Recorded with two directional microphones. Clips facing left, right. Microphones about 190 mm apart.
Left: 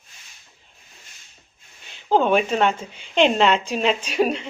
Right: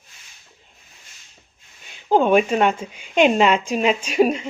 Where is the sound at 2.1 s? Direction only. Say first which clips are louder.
Right 2 dB; 10° right (ahead or behind).